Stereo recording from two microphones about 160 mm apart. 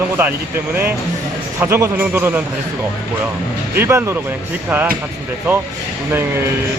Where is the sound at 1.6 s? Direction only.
15° right (ahead or behind).